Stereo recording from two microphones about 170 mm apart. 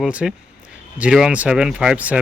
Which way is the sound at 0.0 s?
5° right (ahead or behind).